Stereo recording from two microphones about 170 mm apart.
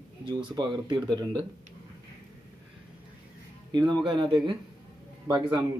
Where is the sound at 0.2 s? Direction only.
30° right (ahead or behind).